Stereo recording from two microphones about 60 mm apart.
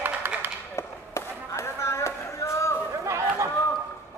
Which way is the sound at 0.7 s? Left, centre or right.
Left.